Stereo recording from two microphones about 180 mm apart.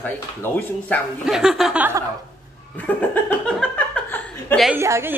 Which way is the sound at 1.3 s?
Centre (ahead or behind).